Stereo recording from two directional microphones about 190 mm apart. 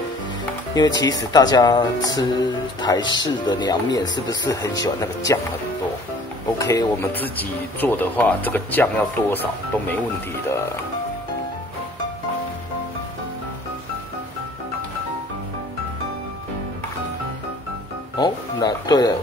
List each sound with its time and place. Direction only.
0.7 s speech: 20° left (ahead or behind)
6.6 s speech: 20° left (ahead or behind)
18.1 s speech: 20° left (ahead or behind)